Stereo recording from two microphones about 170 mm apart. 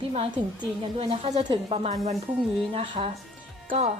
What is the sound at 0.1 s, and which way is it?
A woman's voice, 35° right (ahead or behind).